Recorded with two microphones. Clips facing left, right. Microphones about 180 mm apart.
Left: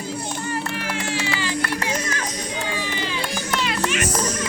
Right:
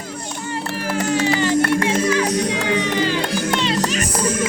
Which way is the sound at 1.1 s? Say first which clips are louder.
Right 11 dB; 45° right (ahead or behind).